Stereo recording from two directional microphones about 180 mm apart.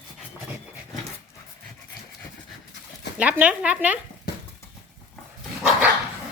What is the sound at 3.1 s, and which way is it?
Speech, 5° right (ahead or behind).